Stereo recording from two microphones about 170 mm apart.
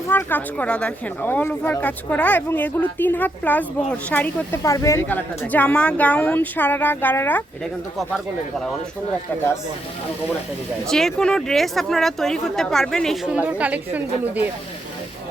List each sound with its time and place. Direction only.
0.1 s speech: 10° left (ahead or behind)
9.3 s speech: 10° left (ahead or behind)
10.8 s speech: 5° left (ahead or behind)